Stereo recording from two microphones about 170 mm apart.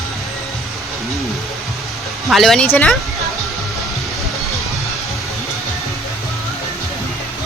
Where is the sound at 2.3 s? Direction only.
Centre (ahead or behind).